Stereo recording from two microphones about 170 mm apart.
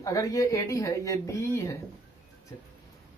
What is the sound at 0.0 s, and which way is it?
Speech, 20° left (ahead or behind).